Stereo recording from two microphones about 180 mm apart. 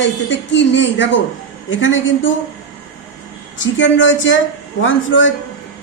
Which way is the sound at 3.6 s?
90° left.